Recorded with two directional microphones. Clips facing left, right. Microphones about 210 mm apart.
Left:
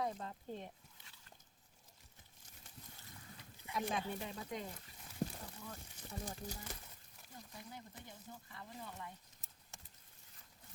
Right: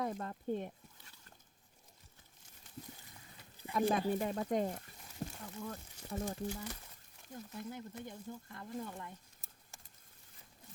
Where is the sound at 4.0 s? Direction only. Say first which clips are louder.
Right 9 dB; 45° right (ahead or behind).